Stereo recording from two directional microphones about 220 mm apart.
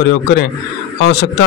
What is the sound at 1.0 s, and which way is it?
Speech, 50° left (ahead or behind).